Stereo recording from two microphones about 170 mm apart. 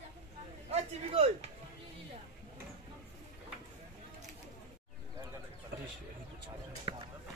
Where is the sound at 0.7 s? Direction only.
35° right (ahead or behind).